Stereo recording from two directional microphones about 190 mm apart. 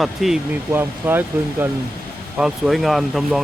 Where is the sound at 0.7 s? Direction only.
10° right (ahead or behind).